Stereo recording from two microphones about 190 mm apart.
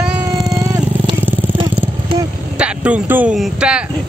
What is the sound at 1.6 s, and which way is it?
Vehicle, 25° right (ahead or behind).